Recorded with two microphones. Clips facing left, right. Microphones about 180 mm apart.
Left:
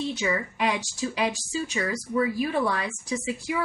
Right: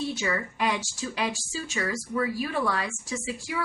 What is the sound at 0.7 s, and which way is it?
Speech, 15° left (ahead or behind).